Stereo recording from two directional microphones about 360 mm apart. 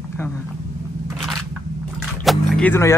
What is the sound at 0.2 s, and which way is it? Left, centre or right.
Speech, centre.